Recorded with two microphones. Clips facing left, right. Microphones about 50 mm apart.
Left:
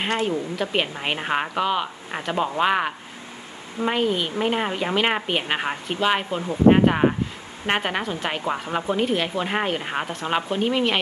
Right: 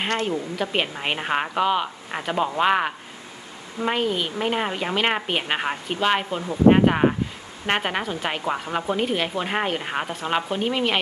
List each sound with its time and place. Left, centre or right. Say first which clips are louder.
0.3 s speech: left 1 dB; centre